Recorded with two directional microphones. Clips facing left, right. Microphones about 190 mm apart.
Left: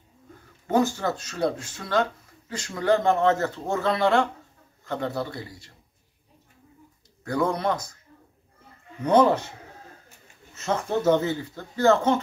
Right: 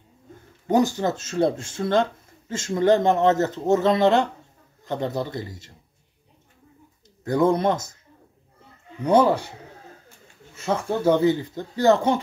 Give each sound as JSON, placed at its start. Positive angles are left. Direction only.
{"t": 0.7, "sound": "a man's voice", "side_deg": -15}
{"t": 7.2, "sound": "a man's voice", "side_deg": -20}
{"t": 9.0, "sound": "speech", "side_deg": -10}
{"t": 11.2, "sound": "speech", "side_deg": -15}